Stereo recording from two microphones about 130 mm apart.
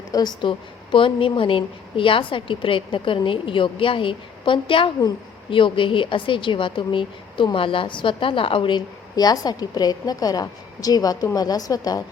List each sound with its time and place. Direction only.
0.1 s a woman's voice: 30° left (ahead or behind)